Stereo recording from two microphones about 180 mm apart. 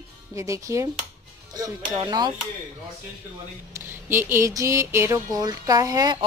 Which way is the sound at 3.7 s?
15° right (ahead or behind).